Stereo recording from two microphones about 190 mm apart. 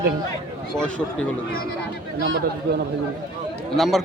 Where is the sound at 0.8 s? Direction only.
5° left (ahead or behind).